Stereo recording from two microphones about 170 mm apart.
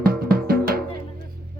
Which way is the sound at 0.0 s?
60° right (ahead or behind).